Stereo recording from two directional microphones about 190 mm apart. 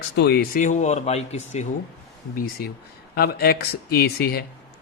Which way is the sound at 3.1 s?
55° left (ahead or behind).